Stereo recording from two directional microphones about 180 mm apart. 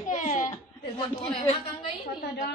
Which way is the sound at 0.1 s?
45° left (ahead or behind).